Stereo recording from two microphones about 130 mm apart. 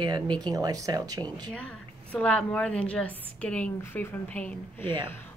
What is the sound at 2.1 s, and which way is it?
A woman's voice, 10° left (ahead or behind).